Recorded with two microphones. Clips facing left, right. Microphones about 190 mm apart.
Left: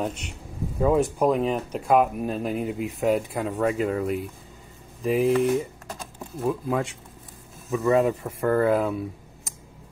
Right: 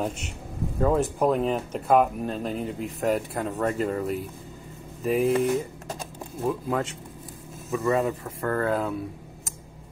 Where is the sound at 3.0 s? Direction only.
Centre (ahead or behind).